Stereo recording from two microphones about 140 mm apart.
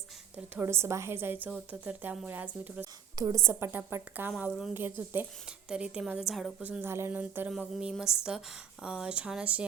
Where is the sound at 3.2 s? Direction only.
25° right (ahead or behind).